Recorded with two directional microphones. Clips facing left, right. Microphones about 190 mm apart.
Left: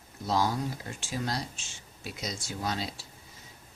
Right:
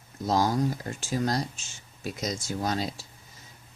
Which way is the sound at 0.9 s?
40° right (ahead or behind).